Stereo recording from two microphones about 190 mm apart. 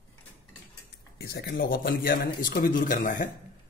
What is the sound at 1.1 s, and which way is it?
Speech, 55° left (ahead or behind).